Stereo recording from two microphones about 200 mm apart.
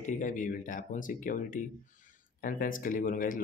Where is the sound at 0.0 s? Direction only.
40° left (ahead or behind).